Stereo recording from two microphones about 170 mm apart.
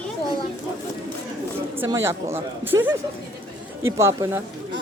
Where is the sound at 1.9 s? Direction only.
15° right (ahead or behind).